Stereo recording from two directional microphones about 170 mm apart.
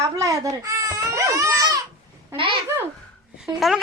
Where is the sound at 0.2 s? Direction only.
20° right (ahead or behind).